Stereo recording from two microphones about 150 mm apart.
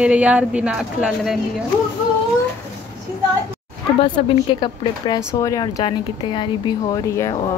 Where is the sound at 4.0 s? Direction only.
35° left (ahead or behind).